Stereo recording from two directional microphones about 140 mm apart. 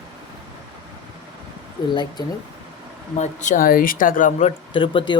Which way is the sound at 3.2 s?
65° left (ahead or behind).